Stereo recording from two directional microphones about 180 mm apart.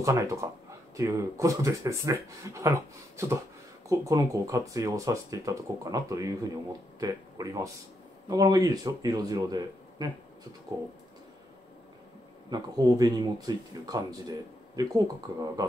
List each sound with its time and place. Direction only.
0.0 s speech: 15° right (ahead or behind)
12.4 s speech: 20° right (ahead or behind)